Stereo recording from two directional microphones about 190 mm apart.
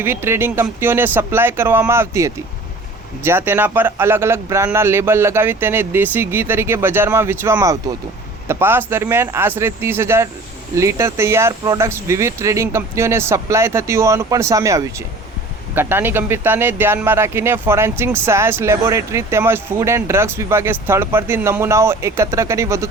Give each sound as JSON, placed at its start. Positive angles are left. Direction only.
{"t": 0.0, "sound": "a man's voice", "side_deg": -10}